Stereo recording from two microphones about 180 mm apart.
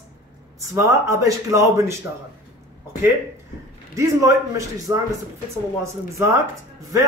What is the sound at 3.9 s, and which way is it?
Speech, 15° right (ahead or behind).